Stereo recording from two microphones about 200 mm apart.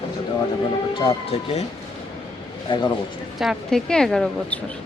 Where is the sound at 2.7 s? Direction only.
25° left (ahead or behind).